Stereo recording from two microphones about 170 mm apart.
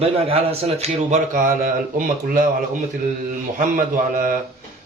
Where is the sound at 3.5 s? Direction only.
50° right (ahead or behind).